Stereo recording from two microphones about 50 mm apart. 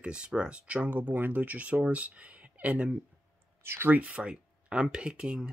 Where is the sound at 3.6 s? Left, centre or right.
Right.